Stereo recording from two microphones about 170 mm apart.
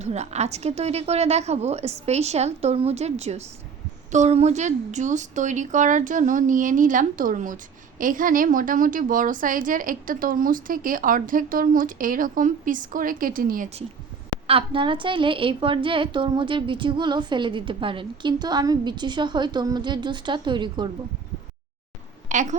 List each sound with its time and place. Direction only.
0.0 s a woman's voice: 40° right (ahead or behind); by 13.7 s 55° right (ahead or behind)
14.4 s a woman's voice: 30° right (ahead or behind)
22.3 s speech: 45° right (ahead or behind)